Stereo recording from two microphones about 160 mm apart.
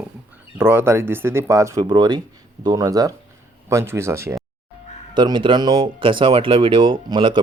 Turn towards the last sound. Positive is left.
turn(degrees=-30)  # may be behind; listen again after turning